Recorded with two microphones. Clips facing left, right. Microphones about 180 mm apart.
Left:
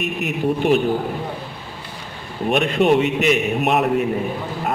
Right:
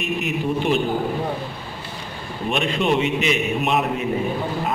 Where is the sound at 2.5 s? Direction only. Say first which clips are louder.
Left 5 dB; 55° left (ahead or behind).